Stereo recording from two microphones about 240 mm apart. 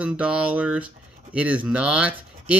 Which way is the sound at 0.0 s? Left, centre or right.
Centre.